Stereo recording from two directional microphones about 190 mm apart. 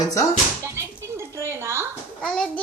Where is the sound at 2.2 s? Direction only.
5° left (ahead or behind).